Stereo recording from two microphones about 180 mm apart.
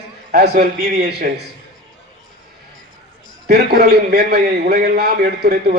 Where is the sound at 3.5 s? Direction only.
60° right (ahead or behind).